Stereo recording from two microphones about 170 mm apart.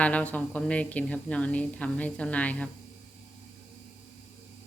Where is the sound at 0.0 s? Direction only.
10° left (ahead or behind).